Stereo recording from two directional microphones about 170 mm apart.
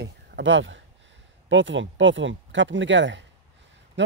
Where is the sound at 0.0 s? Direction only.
90° right.